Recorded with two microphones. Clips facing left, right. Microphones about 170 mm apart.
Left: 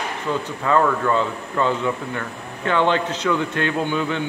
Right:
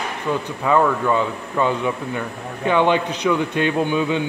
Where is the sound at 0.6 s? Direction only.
10° right (ahead or behind).